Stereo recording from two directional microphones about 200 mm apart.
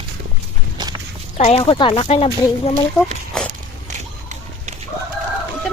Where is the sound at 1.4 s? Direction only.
30° left (ahead or behind).